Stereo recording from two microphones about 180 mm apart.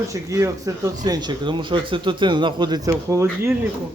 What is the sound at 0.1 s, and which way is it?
Speech, 15° right (ahead or behind).